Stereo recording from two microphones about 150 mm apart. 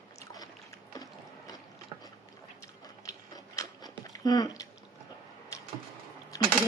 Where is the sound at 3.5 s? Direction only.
25° left (ahead or behind).